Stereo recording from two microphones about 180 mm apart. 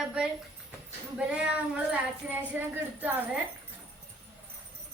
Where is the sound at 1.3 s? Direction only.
5° right (ahead or behind).